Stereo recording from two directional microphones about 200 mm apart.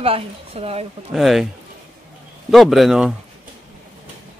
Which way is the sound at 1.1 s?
Centre (ahead or behind).